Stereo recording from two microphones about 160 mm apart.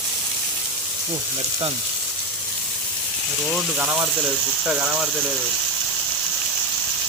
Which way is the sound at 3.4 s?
5° right (ahead or behind).